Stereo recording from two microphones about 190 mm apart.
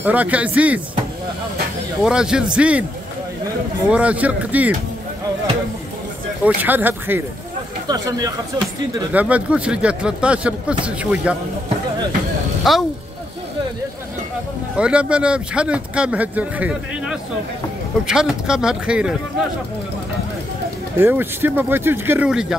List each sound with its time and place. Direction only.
0.0 s a man's voice: 10° right (ahead or behind)
2.0 s speech: 5° right (ahead or behind)
3.9 s a man's voice: 5° right (ahead or behind)
6.4 s a man's voice: 10° right (ahead or behind)
9.1 s a man's voice: 5° right (ahead or behind)
12.7 s speech: centre (ahead or behind)
14.8 s speech: 5° right (ahead or behind)
21.0 s a man's voice: 10° right (ahead or behind)